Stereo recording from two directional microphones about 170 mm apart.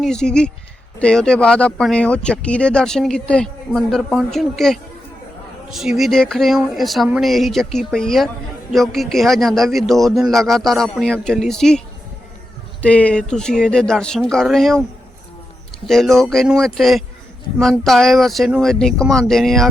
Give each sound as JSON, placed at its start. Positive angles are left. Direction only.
{"t": 0.0, "sound": "speech", "side_deg": 5}
{"t": 12.8, "sound": "speech", "side_deg": 5}
{"t": 15.9, "sound": "speech", "side_deg": 0}